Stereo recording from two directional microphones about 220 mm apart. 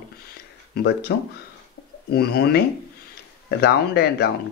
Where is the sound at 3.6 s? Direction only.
50° left (ahead or behind).